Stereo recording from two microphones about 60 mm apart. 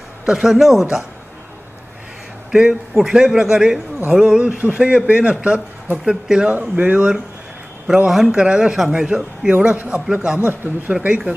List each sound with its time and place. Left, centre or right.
0.3 s speech: centre
2.5 s a man's voice: centre
7.8 s a man's voice: centre